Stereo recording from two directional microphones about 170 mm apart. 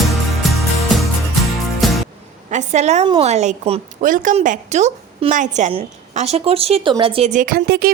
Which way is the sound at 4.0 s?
50° right (ahead or behind).